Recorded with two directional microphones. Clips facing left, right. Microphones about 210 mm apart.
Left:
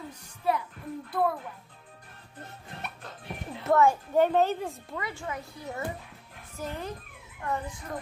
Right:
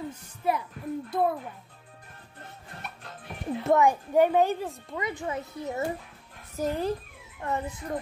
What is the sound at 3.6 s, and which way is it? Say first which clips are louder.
A child's voice: even; 15° right (ahead or behind).